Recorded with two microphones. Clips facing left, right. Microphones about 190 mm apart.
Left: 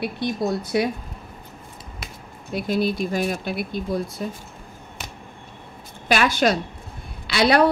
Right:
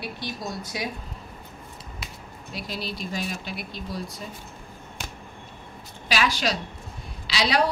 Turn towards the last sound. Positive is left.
turn(degrees=55)  # may be behind; listen again after turning